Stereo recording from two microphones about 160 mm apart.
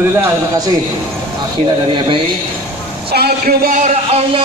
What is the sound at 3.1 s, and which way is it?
Speech, 75° right (ahead or behind).